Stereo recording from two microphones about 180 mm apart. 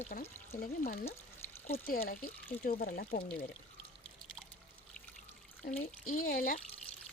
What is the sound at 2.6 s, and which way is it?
Speech, 50° left (ahead or behind).